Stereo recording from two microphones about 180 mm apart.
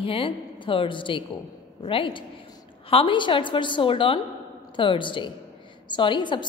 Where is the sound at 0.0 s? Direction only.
30° left (ahead or behind).